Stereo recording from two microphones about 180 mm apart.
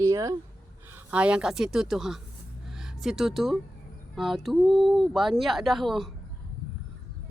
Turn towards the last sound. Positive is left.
turn(degrees=0)  # may be behind; listen again after turning